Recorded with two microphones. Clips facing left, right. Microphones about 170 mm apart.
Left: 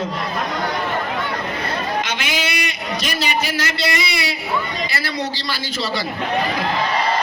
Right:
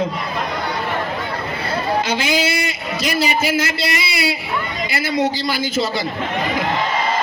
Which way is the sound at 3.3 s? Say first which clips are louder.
Right 3 dB; 25° right (ahead or behind).